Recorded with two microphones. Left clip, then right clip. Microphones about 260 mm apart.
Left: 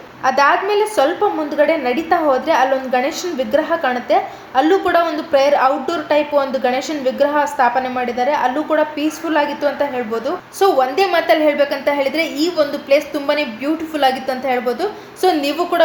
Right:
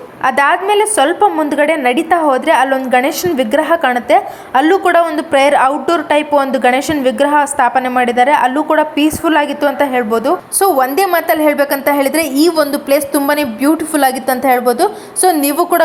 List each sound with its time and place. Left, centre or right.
0.2 s a woman's voice: right